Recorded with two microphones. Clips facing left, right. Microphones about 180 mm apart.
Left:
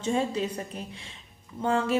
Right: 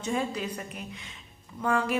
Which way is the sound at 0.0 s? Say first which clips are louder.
Left 3 dB; 30° left (ahead or behind).